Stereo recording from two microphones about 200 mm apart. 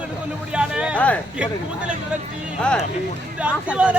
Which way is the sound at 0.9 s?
5° left (ahead or behind).